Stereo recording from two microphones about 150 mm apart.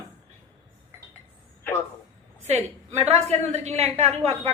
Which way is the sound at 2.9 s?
45° right (ahead or behind).